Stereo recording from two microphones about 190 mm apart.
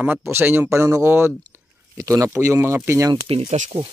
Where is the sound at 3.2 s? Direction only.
30° right (ahead or behind).